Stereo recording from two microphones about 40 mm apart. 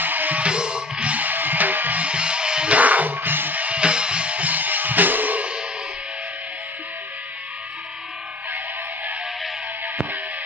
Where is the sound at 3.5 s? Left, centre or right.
Right.